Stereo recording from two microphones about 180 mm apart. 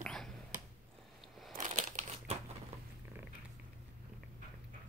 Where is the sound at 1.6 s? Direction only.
40° right (ahead or behind).